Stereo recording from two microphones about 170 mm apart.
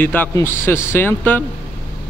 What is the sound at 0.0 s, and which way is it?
A man's voice, 10° left (ahead or behind).